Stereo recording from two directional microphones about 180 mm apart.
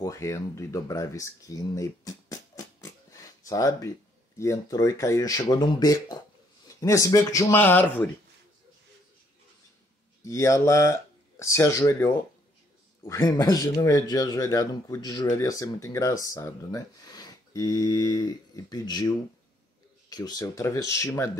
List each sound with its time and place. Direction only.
0.0 s speech: 15° left (ahead or behind)
10.2 s speech: 15° left (ahead or behind)